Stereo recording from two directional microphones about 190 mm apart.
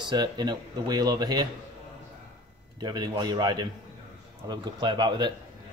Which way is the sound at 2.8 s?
20° right (ahead or behind).